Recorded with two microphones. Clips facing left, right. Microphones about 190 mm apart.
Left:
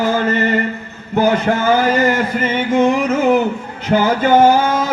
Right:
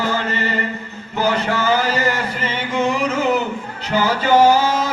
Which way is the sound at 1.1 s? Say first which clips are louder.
Left 5 dB; 50° left (ahead or behind).